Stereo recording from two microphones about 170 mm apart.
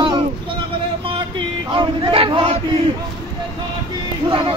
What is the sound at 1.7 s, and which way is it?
Crowd, 30° right (ahead or behind).